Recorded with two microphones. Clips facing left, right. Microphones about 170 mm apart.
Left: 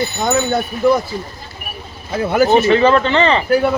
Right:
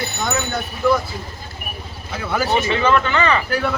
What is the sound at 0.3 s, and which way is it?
Speech, 35° left (ahead or behind).